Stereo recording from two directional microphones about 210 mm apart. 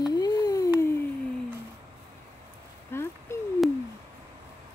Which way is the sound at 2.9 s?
10° left (ahead or behind).